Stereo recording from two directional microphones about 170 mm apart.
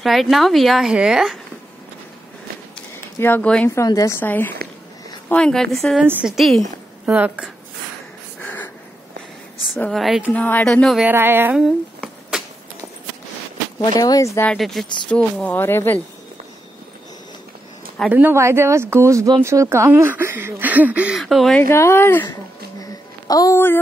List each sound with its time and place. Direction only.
0.0 s speech: centre (ahead or behind)
3.2 s speech: 10° left (ahead or behind); by 7.5 s 10° right (ahead or behind)
8.4 s a sound: 10° left (ahead or behind)
9.8 s speech: 5° left (ahead or behind)
10.3 s speech: 10° left (ahead or behind)
11.1 s speech: 15° right (ahead or behind)
12.0 s a sound: centre (ahead or behind)
13.7 s speech: 20° left (ahead or behind)
14.5 s speech: centre (ahead or behind)
18.1 s speech: 15° right (ahead or behind)
21.6 s speech: 15° left (ahead or behind)
22.8 s a sound: 20° left (ahead or behind)